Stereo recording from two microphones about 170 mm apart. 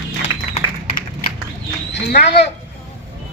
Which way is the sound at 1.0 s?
55° left (ahead or behind).